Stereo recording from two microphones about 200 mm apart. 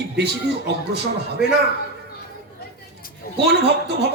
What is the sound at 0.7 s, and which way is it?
Speech, 55° right (ahead or behind).